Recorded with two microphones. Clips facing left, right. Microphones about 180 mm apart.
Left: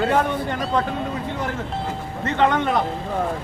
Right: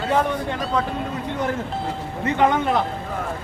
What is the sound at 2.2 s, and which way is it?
Speech, 10° right (ahead or behind).